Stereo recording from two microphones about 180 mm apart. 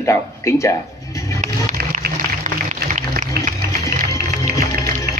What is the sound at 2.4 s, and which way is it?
Applause, 40° right (ahead or behind).